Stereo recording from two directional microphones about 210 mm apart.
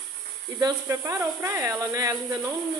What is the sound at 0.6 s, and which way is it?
Speech, 15° right (ahead or behind).